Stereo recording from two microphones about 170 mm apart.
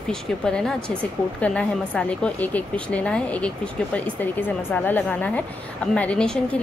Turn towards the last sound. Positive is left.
turn(degrees=5)  # may be behind; listen again after turning